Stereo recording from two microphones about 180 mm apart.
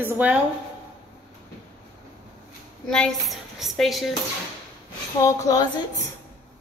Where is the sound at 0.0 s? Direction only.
10° right (ahead or behind).